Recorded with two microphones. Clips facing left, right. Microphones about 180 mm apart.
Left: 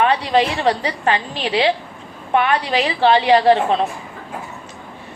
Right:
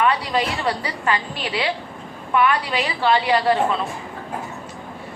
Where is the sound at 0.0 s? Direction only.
25° left (ahead or behind).